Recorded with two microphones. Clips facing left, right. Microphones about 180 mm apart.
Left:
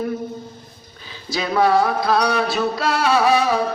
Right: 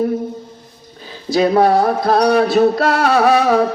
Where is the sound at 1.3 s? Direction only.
50° right (ahead or behind).